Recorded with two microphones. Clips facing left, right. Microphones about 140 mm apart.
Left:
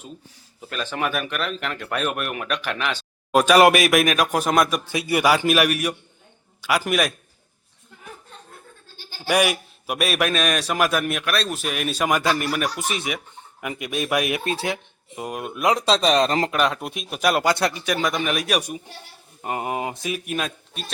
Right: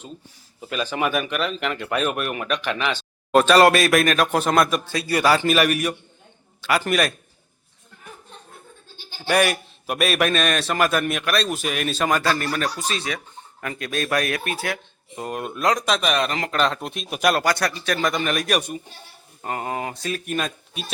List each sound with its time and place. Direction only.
0.7 s speech: 5° right (ahead or behind)
4.9 s a man's voice: 20° left (ahead or behind)
9.2 s a man's voice: 10° left (ahead or behind)
15.1 s speech: 5° left (ahead or behind)
15.6 s speech: 20° left (ahead or behind)
16.0 s speech: 35° left (ahead or behind)
16.5 s a man's voice: 10° left (ahead or behind)
17.1 s speech: centre (ahead or behind)
17.3 s speech: 20° left (ahead or behind)
17.8 s speech: 10° left (ahead or behind)
19.4 s a man's voice: 15° left (ahead or behind)